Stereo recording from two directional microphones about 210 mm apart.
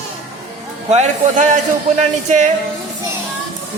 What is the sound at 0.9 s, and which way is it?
Speech, 35° right (ahead or behind).